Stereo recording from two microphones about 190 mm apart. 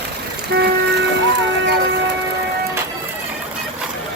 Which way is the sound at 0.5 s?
60° right (ahead or behind).